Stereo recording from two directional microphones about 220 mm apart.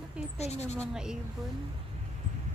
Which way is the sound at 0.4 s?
30° left (ahead or behind).